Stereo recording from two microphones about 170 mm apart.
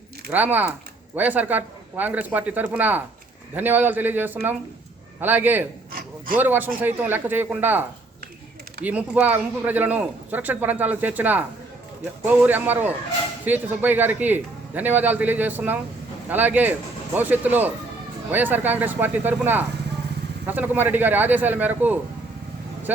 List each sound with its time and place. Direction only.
0.3 s speech: 10° right (ahead or behind)
5.9 s a sound: 60° right (ahead or behind)
6.3 s speech: 10° right (ahead or behind)